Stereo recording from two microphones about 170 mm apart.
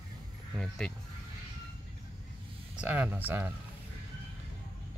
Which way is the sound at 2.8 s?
10° right (ahead or behind).